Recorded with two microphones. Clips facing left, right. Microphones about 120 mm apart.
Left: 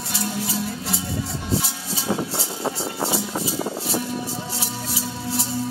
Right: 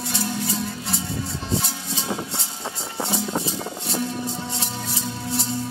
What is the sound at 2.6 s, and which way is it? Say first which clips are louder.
Music: left 4 dB; 30° left (ahead or behind).